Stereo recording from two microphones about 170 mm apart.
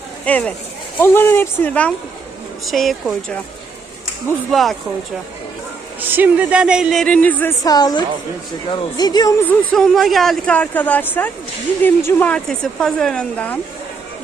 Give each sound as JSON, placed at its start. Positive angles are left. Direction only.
{"t": 0.3, "sound": "speech", "side_deg": 10}
{"t": 4.5, "sound": "speech", "side_deg": 0}
{"t": 6.0, "sound": "speech", "side_deg": -10}
{"t": 7.6, "sound": "speech", "side_deg": 20}
{"t": 9.5, "sound": "speech", "side_deg": 0}